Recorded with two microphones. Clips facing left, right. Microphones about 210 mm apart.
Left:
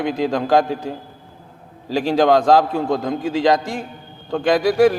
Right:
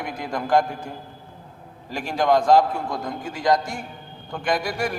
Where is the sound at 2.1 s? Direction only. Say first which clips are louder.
Left 4 dB; 90° left.